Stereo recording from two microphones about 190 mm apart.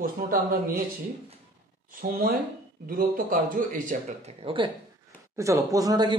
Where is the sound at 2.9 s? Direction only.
45° right (ahead or behind).